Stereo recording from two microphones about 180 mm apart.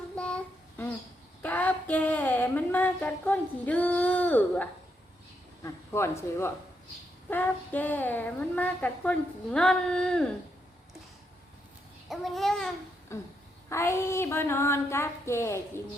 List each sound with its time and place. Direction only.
0.2 s child singing: 5° left (ahead or behind)
1.4 s a sound: 10° left (ahead or behind)
5.6 s a woman's voice: 15° left (ahead or behind)
12.0 s a child's voice: centre (ahead or behind)
13.1 s a woman's voice: 15° left (ahead or behind)